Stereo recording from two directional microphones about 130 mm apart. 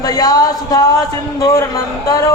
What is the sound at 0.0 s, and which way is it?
Speech, 30° left (ahead or behind).